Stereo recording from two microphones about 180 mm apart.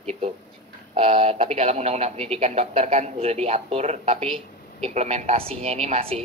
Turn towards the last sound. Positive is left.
turn(degrees=-35)  # may be behind; listen again after turning